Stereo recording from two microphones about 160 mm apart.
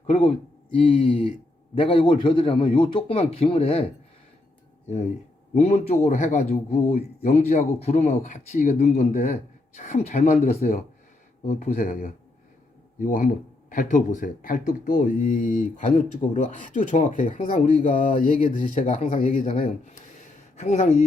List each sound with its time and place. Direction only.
0.1 s a man's voice: 35° left (ahead or behind)
5.5 s a man's voice: 45° left (ahead or behind)